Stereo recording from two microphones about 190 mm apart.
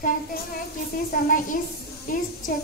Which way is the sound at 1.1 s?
50° left (ahead or behind).